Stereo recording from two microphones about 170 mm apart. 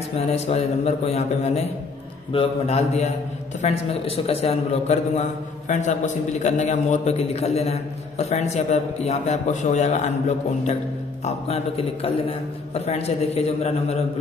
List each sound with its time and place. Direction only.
0.2 s a man's voice: 40° left (ahead or behind)
11.2 s a man's voice: 40° left (ahead or behind)